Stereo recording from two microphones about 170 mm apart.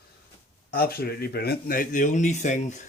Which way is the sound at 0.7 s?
65° left (ahead or behind).